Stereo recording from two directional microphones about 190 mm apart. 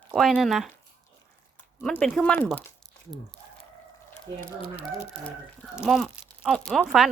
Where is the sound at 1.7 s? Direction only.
5° left (ahead or behind).